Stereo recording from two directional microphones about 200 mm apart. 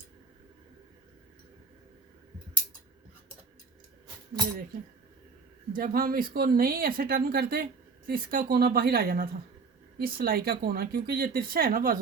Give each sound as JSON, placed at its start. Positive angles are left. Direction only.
{"t": 5.7, "sound": "speech", "side_deg": -45}